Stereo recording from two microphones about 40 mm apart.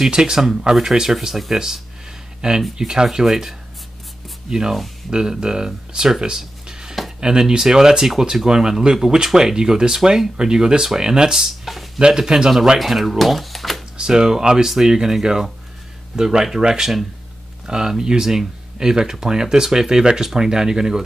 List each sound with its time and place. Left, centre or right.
0.1 s speech: centre
6.2 s a sound: centre
7.2 s speech: centre
11.3 s speech: centre
12.0 s speech: centre
12.7 s speech: centre
13.9 s speech: centre